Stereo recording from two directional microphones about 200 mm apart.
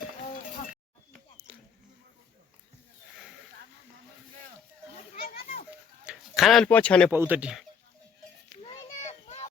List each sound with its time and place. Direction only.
6.1 s speech: centre (ahead or behind)
7.1 s speech: 10° right (ahead or behind)
9.0 s a sound: 35° left (ahead or behind)